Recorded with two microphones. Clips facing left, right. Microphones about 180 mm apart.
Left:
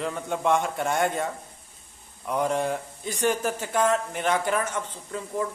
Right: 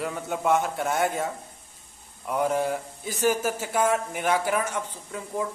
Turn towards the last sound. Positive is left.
turn(degrees=-10)  # may be behind; listen again after turning